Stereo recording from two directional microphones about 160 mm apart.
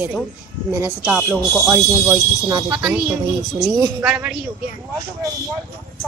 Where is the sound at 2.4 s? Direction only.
20° right (ahead or behind).